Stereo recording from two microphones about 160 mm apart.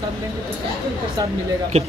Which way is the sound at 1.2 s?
25° right (ahead or behind).